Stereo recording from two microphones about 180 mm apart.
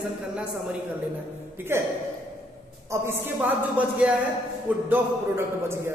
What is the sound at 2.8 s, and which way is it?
Speech, 15° right (ahead or behind).